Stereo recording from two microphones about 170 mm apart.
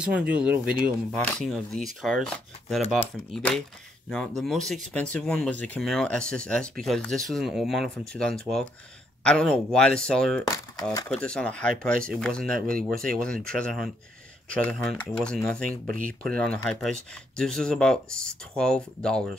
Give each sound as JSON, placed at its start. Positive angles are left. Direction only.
{"t": 0.0, "sound": "speech", "side_deg": -5}
{"t": 10.5, "sound": "speech", "side_deg": 20}
{"t": 11.1, "sound": "speech", "side_deg": 5}